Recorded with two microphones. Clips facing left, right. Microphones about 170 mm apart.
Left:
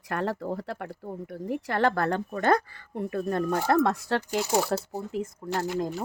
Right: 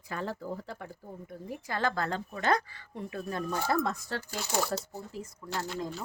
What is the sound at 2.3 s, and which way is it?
Speech, 50° left (ahead or behind).